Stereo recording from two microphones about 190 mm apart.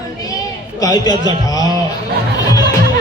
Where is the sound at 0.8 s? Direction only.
20° left (ahead or behind).